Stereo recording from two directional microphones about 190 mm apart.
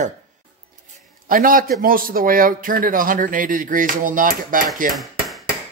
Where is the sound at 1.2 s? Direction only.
45° right (ahead or behind).